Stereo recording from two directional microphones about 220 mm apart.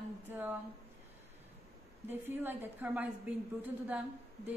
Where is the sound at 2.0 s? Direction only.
10° right (ahead or behind).